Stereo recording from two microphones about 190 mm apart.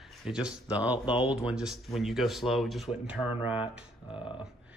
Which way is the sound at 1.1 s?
30° left (ahead or behind).